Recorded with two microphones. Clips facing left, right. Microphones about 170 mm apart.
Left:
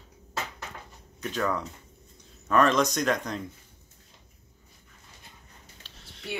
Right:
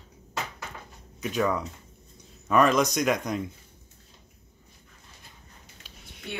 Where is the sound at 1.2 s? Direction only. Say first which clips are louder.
Right 3 dB; 10° right (ahead or behind).